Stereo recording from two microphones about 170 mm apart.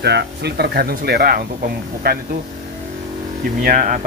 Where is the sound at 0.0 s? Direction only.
75° right (ahead or behind).